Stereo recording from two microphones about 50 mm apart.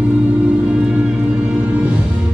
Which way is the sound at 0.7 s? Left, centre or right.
Right.